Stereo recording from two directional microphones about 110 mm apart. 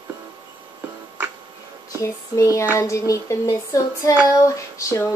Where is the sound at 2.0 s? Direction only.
30° left (ahead or behind).